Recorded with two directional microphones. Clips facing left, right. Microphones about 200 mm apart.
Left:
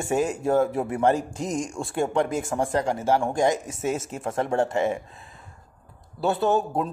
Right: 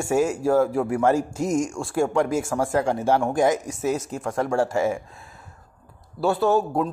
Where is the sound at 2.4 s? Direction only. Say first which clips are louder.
Right 1 dB; 20° left (ahead or behind).